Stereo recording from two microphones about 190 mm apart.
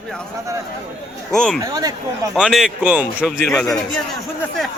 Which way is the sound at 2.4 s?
Centre (ahead or behind).